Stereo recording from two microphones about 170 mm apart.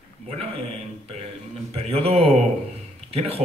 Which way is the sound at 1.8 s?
35° right (ahead or behind).